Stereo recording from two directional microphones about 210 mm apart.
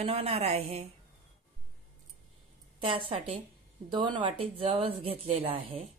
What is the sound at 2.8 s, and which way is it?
Speech, 25° right (ahead or behind).